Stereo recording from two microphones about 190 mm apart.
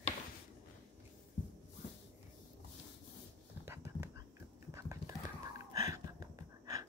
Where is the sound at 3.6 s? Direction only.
10° right (ahead or behind).